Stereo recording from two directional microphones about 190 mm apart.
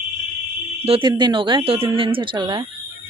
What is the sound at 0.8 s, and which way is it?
Speech, 25° right (ahead or behind).